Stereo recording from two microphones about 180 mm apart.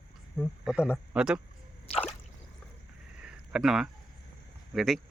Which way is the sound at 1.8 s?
30° left (ahead or behind).